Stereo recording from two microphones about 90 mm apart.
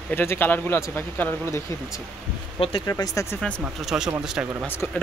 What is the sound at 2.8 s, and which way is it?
Speech, 40° left (ahead or behind).